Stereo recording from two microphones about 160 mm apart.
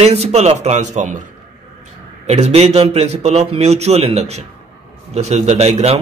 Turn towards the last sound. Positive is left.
turn(degrees=-40)  # may be behind; listen again after turning